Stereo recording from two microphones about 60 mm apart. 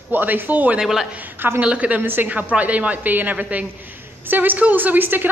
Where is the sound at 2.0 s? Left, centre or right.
Right.